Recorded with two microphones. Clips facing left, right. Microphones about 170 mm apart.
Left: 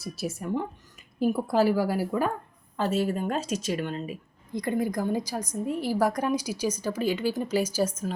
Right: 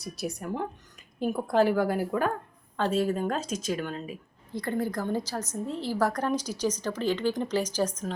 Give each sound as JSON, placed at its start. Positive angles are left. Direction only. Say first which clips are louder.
{"t": 0.0, "sound": "speech", "louder": "left 1 dB", "side_deg": 0}
{"t": 4.5, "sound": "a woman's voice", "louder": "left 2 dB", "side_deg": 15}